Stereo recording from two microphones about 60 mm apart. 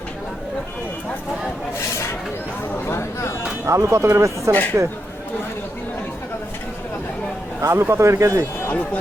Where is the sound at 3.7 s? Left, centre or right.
Right.